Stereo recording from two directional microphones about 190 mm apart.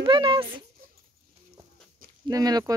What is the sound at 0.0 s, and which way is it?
Speech, 25° right (ahead or behind).